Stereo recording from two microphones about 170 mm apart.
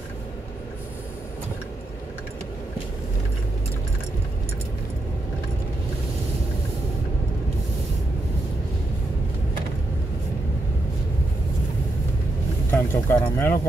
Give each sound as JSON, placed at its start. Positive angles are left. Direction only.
{"t": 12.7, "sound": "vehicle", "side_deg": 15}